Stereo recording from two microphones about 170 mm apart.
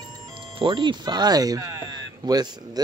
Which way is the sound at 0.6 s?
30° right (ahead or behind).